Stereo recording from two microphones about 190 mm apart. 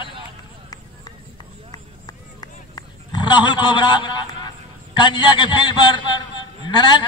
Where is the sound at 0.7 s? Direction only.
20° left (ahead or behind).